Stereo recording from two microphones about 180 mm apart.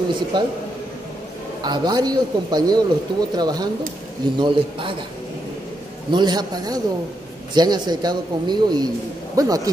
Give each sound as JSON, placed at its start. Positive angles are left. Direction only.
{"t": 0.1, "sound": "a man's voice", "side_deg": -25}
{"t": 1.6, "sound": "a man's voice", "side_deg": -25}
{"t": 6.1, "sound": "a man's voice", "side_deg": -25}